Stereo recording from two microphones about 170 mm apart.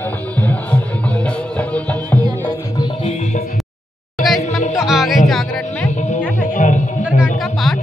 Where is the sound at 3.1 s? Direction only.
40° left (ahead or behind).